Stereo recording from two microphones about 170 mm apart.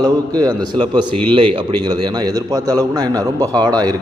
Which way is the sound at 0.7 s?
25° right (ahead or behind).